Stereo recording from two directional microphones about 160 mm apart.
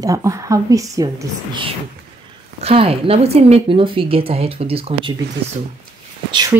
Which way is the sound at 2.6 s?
35° right (ahead or behind).